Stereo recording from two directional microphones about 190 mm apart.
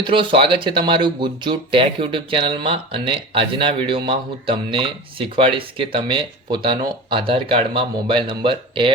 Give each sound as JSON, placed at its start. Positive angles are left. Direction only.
{"t": 0.1, "sound": "speech", "side_deg": -25}